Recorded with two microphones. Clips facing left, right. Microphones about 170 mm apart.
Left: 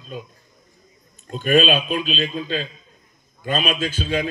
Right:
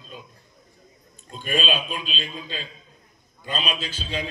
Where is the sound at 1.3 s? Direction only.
50° left (ahead or behind).